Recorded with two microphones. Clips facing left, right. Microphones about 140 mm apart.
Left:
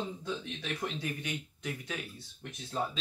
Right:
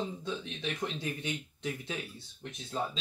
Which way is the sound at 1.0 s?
25° right (ahead or behind).